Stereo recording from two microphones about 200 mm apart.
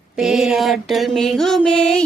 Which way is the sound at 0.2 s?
5° right (ahead or behind).